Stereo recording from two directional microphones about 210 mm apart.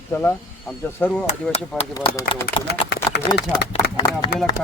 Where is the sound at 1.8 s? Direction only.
25° left (ahead or behind).